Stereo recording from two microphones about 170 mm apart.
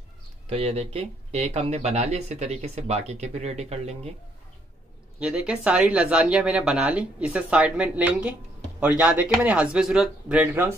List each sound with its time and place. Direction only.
0.5 s speech: 35° right (ahead or behind)
5.2 s speech: 5° right (ahead or behind)